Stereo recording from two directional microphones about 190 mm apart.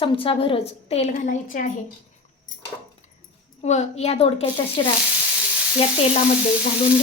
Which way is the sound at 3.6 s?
35° left (ahead or behind).